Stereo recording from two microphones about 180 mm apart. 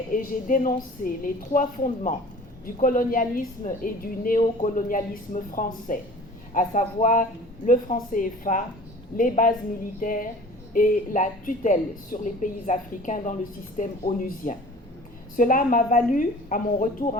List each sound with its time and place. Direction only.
0.1 s a woman's voice: 50° left (ahead or behind)